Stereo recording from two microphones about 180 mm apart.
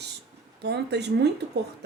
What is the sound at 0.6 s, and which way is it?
Speech, 65° right (ahead or behind).